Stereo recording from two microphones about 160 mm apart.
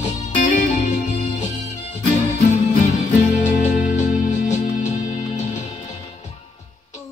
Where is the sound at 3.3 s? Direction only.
50° left (ahead or behind).